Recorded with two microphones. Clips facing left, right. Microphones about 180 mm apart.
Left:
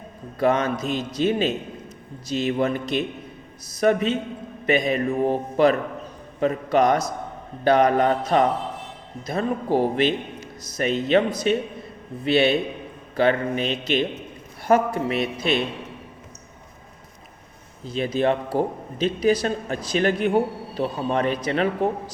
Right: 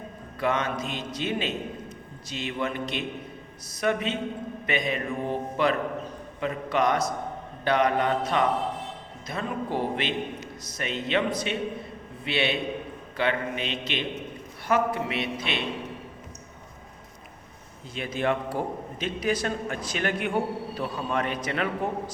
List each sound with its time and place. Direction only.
0.3 s a man's voice: 40° left (ahead or behind)
17.8 s a man's voice: 35° left (ahead or behind)